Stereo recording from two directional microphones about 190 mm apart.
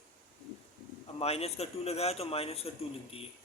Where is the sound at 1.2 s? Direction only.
35° left (ahead or behind).